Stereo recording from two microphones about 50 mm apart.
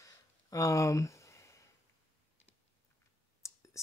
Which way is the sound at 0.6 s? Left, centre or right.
Left.